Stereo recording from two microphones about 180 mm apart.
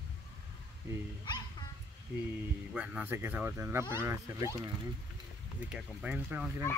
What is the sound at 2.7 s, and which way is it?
Speech, 10° right (ahead or behind).